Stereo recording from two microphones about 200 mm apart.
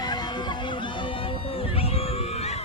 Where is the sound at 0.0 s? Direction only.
20° left (ahead or behind).